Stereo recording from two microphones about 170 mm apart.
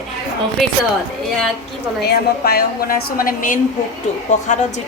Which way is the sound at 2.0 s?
70° left (ahead or behind).